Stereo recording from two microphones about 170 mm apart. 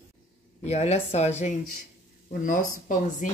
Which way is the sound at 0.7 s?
40° left (ahead or behind).